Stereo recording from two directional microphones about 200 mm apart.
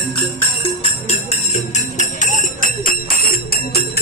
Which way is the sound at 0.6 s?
25° left (ahead or behind).